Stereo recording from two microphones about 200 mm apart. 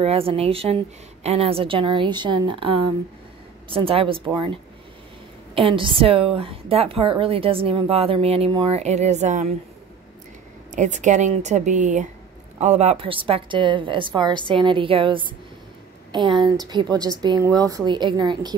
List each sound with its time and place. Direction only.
0.0 s a woman's voice: 30° right (ahead or behind)
5.6 s a woman's voice: 25° right (ahead or behind)
10.7 s a woman's voice: 40° right (ahead or behind); by 18.5 s 20° right (ahead or behind)